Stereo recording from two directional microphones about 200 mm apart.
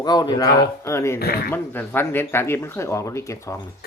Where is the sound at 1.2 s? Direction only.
50° left (ahead or behind).